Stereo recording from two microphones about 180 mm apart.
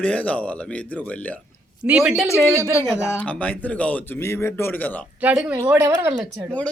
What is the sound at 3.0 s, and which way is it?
Speech, 10° left (ahead or behind).